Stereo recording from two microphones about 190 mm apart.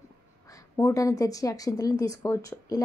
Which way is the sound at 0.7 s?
15° left (ahead or behind).